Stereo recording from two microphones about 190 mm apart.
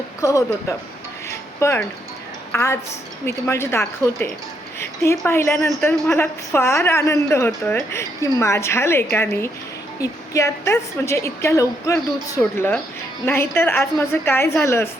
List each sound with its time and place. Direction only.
0.2 s speech: 15° left (ahead or behind)
1.3 s music: 15° left (ahead or behind)
2.5 s a woman's voice: 15° left (ahead or behind)